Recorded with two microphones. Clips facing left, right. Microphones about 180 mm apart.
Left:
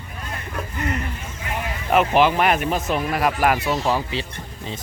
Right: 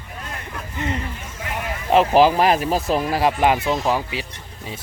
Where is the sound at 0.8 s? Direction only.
25° right (ahead or behind).